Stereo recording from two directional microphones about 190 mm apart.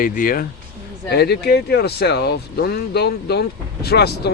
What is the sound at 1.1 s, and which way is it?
Speech, 60° left (ahead or behind).